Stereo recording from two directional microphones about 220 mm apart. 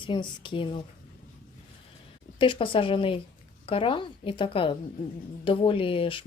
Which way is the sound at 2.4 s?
25° left (ahead or behind).